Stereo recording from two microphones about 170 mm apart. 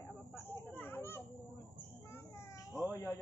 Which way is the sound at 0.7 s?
10° left (ahead or behind).